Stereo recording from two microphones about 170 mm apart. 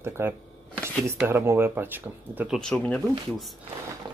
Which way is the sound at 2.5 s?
5° left (ahead or behind).